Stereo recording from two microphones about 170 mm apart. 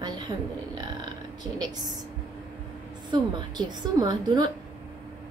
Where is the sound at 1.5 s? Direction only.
25° right (ahead or behind).